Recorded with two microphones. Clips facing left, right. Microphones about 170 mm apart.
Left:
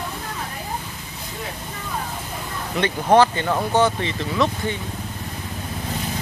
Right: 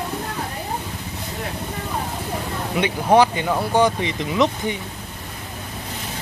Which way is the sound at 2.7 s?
10° right (ahead or behind).